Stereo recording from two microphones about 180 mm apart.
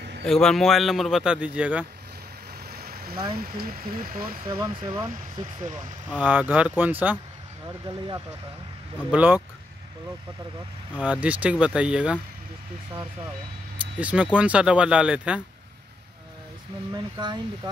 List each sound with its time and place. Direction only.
0.2 s speech: 5° left (ahead or behind)
2.7 s vehicle: 60° right (ahead or behind)
3.3 s speech: 55° right (ahead or behind)
4.5 s speech: 25° right (ahead or behind)
5.6 s speech: 45° right (ahead or behind)
6.1 s speech: 10° right (ahead or behind)
9.1 s speech: 10° right (ahead or behind)
11.0 s speech: 5° right (ahead or behind)
13.9 s speech: 5° right (ahead or behind)
16.9 s speech: 25° right (ahead or behind)